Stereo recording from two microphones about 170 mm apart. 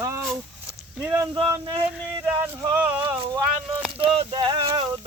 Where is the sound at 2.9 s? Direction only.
10° right (ahead or behind).